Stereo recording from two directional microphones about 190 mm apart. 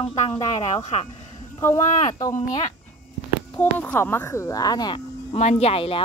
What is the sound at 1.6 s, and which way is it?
Speech, 15° left (ahead or behind).